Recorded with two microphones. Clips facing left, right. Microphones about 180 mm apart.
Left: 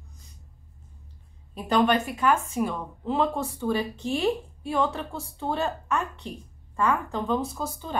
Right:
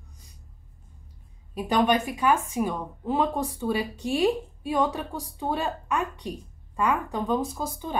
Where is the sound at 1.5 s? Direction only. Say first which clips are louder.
Even; 10° right (ahead or behind).